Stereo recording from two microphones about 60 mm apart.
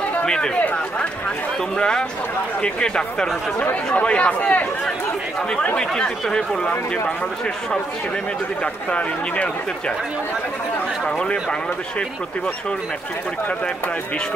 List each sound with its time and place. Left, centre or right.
0.2 s chatter: centre
1.8 s speech: centre
3.5 s speech: left
5.8 s speech: centre
8.9 s speech: left
11.1 s speech: centre